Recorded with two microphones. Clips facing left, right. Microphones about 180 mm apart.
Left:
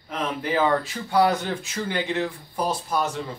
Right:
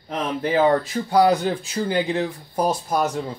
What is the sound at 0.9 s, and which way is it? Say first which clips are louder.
Speech: right 4 dB; 35° right (ahead or behind).